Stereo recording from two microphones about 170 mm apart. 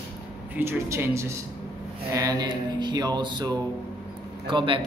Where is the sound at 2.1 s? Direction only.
20° right (ahead or behind).